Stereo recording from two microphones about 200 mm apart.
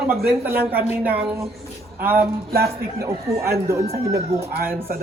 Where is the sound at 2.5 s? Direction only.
50° right (ahead or behind).